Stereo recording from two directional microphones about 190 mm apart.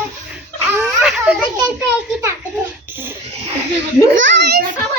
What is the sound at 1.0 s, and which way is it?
Children playing, 5° right (ahead or behind).